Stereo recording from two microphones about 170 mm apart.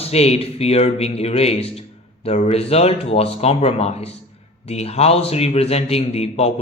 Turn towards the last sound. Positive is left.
turn(degrees=40)  # may be behind; listen again after turning